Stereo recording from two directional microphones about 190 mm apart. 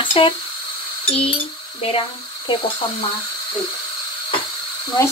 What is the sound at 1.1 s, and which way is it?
Cutlery, 30° left (ahead or behind).